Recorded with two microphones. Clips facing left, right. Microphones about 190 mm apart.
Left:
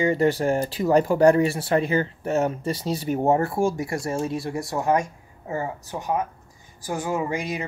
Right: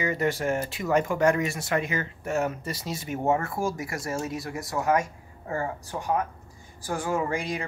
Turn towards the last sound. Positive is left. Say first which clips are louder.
# left 2 dB
turn(degrees=15)  # may be behind; listen again after turning